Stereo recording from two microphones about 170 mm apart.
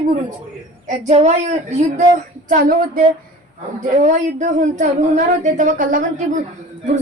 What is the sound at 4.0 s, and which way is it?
A woman's voice, 45° right (ahead or behind).